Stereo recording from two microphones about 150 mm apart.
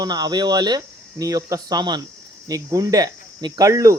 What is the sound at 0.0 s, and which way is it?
Speech, 25° right (ahead or behind).